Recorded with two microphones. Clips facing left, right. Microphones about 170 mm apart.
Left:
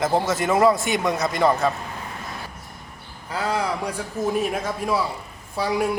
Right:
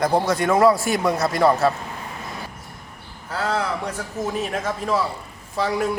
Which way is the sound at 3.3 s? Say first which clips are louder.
Even; 10° left (ahead or behind).